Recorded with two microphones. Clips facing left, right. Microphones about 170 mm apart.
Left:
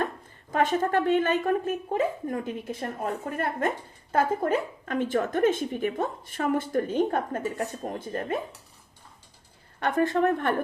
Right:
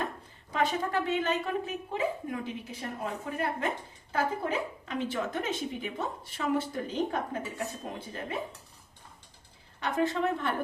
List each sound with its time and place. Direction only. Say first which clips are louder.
0.5 s a woman's voice: left 5 dB; 50° left (ahead or behind)
9.8 s a woman's voice: left 5 dB; 50° left (ahead or behind)